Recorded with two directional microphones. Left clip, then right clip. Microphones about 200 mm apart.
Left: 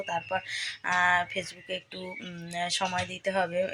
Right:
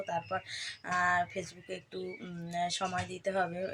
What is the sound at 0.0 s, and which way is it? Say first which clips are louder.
Speech: left 4 dB; centre (ahead or behind).